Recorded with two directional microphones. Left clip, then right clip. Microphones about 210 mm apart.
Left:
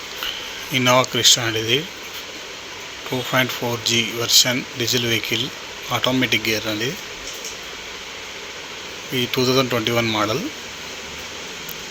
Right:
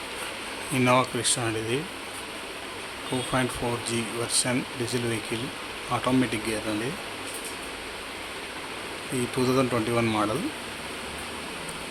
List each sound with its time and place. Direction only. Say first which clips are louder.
0.7 s speech: left 6 dB; 5° left (ahead or behind)
3.3 s speech: left 8 dB; 5° left (ahead or behind)
9.4 s speech: left 5 dB; centre (ahead or behind)